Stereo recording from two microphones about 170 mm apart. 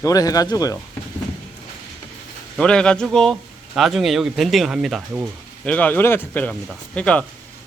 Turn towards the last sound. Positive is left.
turn(degrees=5)  # may be behind; listen again after turning